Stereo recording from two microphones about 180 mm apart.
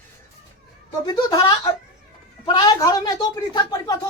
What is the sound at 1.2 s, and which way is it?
A woman's voice, 20° left (ahead or behind).